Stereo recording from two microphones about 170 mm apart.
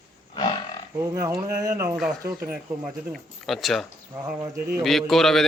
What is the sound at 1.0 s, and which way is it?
Speech, 15° right (ahead or behind).